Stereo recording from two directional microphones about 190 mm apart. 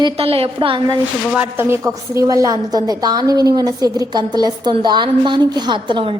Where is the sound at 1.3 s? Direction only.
10° right (ahead or behind).